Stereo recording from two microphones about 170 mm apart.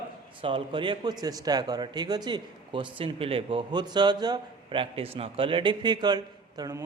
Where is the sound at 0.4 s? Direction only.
30° right (ahead or behind).